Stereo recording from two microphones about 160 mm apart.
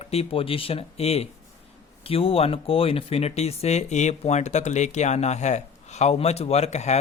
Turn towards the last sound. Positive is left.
turn(degrees=45)  # may be behind; listen again after turning